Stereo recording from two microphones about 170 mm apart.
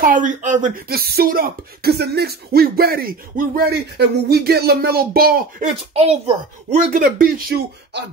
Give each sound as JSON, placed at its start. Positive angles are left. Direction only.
{"t": 0.0, "sound": "speech", "side_deg": -50}
{"t": 5.6, "sound": "speech", "side_deg": -35}
{"t": 6.9, "sound": "speech", "side_deg": -55}